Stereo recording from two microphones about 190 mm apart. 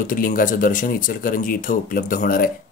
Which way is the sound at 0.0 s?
45° left (ahead or behind).